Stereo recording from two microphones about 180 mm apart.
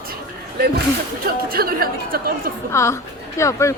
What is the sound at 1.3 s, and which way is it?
Speech, 55° right (ahead or behind).